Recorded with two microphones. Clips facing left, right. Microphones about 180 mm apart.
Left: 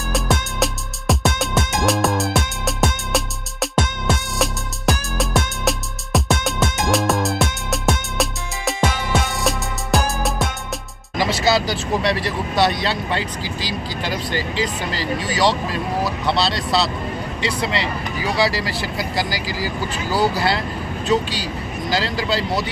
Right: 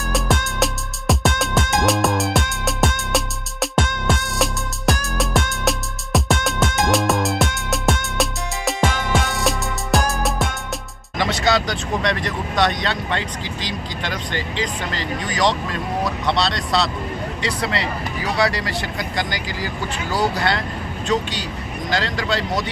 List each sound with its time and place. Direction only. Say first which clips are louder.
0.1 s music: even; centre (ahead or behind)
12.2 s speech: left 1 dB; 5° left (ahead or behind)
18.9 s speech: left 2 dB; 5° left (ahead or behind)